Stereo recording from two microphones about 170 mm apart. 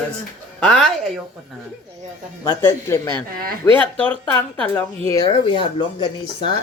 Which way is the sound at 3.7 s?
15° left (ahead or behind).